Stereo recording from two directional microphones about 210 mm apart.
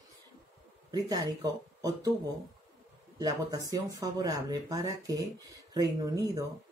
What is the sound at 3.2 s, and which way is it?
Speech, 20° right (ahead or behind).